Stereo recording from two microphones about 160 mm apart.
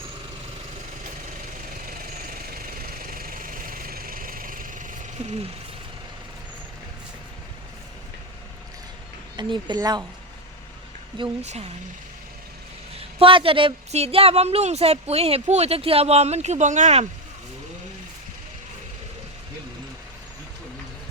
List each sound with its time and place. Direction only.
1.0 s engine: 55° right (ahead or behind)
9.3 s speech: 30° right (ahead or behind)
11.4 s speech: 40° right (ahead or behind)
13.1 s a woman's voice: 35° right (ahead or behind)